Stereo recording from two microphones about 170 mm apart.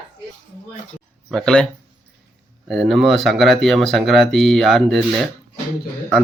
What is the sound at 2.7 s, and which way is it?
Speech, centre (ahead or behind).